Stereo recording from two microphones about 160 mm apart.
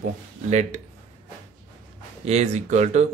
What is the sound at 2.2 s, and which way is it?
Speech, 45° right (ahead or behind).